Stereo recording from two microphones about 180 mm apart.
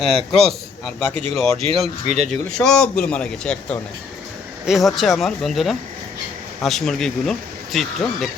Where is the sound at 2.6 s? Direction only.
5° left (ahead or behind).